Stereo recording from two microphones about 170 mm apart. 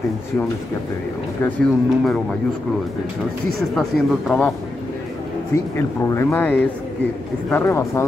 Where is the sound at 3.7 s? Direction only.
Centre (ahead or behind).